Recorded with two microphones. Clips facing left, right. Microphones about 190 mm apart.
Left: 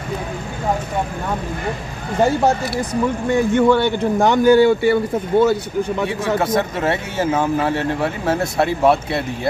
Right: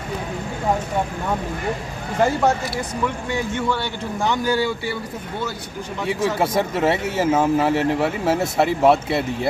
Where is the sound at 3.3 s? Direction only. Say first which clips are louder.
Left 13 dB; 55° left (ahead or behind).